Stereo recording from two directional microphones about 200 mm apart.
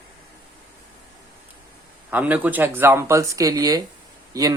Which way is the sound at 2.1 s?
10° right (ahead or behind).